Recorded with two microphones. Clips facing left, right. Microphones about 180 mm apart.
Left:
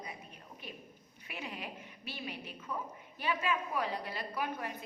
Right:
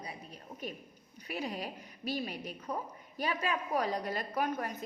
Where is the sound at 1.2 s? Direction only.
35° right (ahead or behind).